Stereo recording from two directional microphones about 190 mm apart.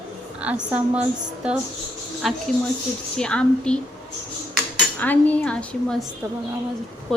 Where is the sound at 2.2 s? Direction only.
Centre (ahead or behind).